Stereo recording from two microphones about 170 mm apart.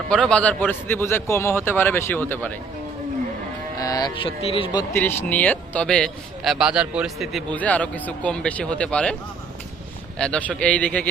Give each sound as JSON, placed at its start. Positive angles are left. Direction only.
{"t": 0.1, "sound": "a man's voice", "side_deg": 5}
{"t": 3.8, "sound": "speech", "side_deg": 20}
{"t": 4.9, "sound": "a man's voice", "side_deg": 10}
{"t": 7.5, "sound": "a man's voice", "side_deg": 10}
{"t": 10.2, "sound": "a man's voice", "side_deg": 5}